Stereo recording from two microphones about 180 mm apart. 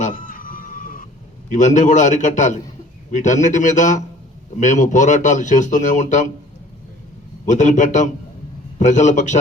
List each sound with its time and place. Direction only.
0.0 s music: 50° left (ahead or behind)
1.5 s a man's voice: 45° left (ahead or behind)
7.4 s a man's voice: 45° left (ahead or behind)